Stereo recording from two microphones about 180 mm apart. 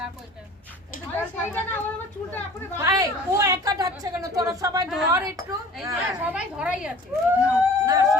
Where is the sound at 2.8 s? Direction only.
20° right (ahead or behind).